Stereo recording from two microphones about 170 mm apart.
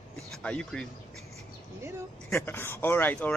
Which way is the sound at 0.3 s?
5° left (ahead or behind).